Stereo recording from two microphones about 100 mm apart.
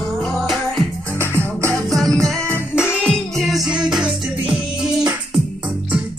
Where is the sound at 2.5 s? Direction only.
25° left (ahead or behind).